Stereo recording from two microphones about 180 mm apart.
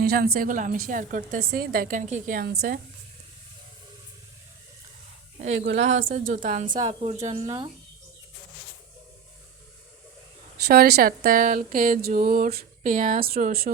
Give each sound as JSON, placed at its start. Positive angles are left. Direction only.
{"t": 0.0, "sound": "speech", "side_deg": -60}
{"t": 5.4, "sound": "a woman's voice", "side_deg": -40}
{"t": 7.4, "sound": "speech", "side_deg": -25}
{"t": 10.7, "sound": "speech", "side_deg": -60}